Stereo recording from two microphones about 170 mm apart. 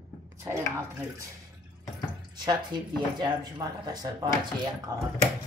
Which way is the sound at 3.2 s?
25° right (ahead or behind).